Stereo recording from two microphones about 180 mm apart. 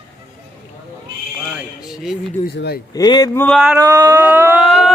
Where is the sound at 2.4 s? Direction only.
65° left (ahead or behind).